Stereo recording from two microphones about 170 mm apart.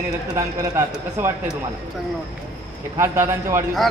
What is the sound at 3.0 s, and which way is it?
Speech, 15° right (ahead or behind).